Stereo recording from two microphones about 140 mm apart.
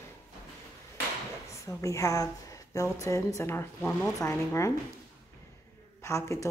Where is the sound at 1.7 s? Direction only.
20° left (ahead or behind).